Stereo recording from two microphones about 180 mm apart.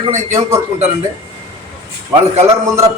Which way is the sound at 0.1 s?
40° right (ahead or behind).